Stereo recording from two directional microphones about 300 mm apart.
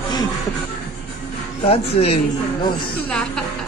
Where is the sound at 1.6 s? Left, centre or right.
Centre.